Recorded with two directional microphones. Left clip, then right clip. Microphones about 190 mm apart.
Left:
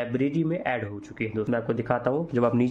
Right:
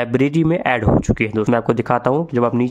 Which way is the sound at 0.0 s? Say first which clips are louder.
Right 9 dB; 45° right (ahead or behind).